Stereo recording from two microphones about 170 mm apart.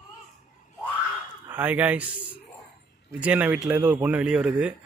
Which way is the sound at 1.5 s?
10° right (ahead or behind).